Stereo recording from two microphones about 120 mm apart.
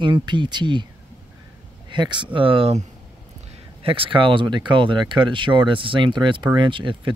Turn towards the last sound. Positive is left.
turn(degrees=-40)  # may be behind; listen again after turning